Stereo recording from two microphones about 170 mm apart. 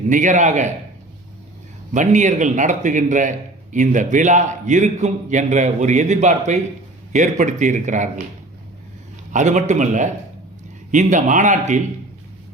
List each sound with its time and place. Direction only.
0.1 s a man's voice: 45° right (ahead or behind)
1.9 s a man's voice: 45° right (ahead or behind)
9.3 s a man's voice: 45° right (ahead or behind)